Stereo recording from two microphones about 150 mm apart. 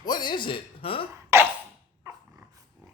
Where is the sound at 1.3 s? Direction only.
20° right (ahead or behind).